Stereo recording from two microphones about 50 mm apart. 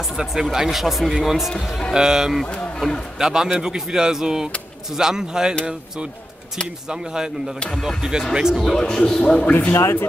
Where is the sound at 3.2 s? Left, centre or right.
Centre.